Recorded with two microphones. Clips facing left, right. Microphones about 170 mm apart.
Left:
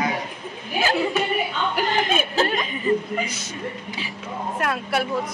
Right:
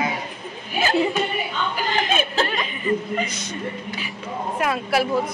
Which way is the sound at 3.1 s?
5° left (ahead or behind).